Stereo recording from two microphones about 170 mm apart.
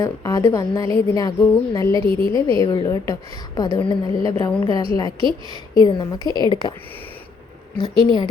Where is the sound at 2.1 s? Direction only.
60° left (ahead or behind).